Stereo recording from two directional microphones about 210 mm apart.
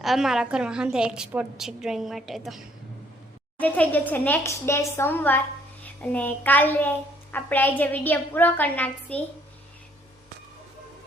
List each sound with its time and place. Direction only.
0.0 s a woman's voice: centre (ahead or behind)